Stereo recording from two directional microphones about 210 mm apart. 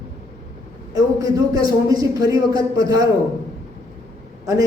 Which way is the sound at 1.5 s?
15° right (ahead or behind).